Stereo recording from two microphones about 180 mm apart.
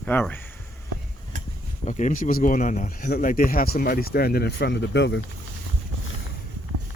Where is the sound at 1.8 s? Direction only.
45° left (ahead or behind); by 5.2 s 75° left (ahead or behind).